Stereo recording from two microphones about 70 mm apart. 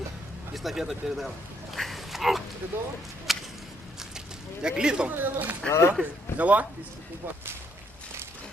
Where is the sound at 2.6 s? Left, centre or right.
Right.